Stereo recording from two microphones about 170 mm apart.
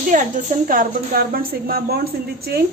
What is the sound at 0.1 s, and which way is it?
A woman's voice, 50° right (ahead or behind).